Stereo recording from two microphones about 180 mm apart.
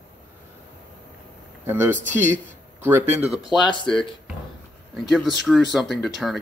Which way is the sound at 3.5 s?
25° left (ahead or behind).